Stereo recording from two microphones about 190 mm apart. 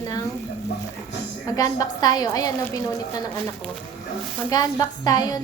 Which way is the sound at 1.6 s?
20° left (ahead or behind).